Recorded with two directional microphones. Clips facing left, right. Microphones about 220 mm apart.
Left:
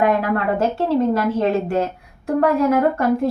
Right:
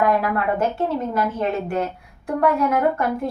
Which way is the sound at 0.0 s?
25° left (ahead or behind).